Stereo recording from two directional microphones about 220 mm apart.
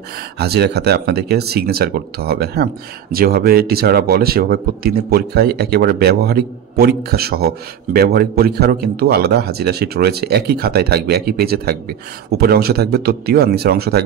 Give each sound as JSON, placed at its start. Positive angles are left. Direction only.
{"t": 0.4, "sound": "speech", "side_deg": -45}